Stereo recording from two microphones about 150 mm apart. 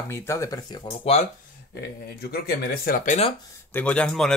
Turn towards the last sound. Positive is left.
turn(degrees=5)  # may be behind; listen again after turning